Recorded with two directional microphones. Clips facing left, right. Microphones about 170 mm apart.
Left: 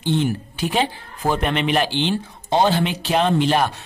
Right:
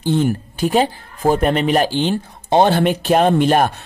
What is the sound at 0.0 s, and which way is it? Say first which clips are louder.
Speech: right 4 dB; 45° right (ahead or behind).